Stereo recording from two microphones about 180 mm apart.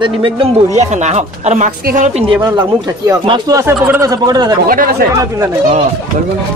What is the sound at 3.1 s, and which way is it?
Speech, 25° right (ahead or behind).